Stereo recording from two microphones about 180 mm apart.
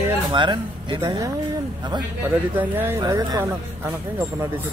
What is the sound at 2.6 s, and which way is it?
Speech, 10° right (ahead or behind).